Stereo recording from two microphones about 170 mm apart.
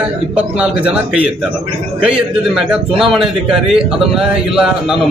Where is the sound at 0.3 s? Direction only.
5° right (ahead or behind).